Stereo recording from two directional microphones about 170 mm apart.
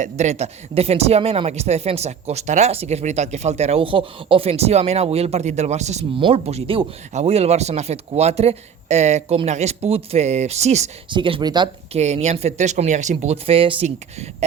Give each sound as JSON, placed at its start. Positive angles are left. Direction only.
{"t": 0.0, "sound": "speech", "side_deg": -45}
{"t": 11.1, "sound": "speech", "side_deg": -30}
{"t": 11.9, "sound": "speech", "side_deg": -40}